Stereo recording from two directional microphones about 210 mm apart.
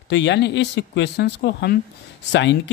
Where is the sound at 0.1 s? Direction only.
55° left (ahead or behind).